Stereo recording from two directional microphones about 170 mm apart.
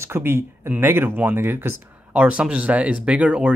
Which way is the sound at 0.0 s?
15° right (ahead or behind).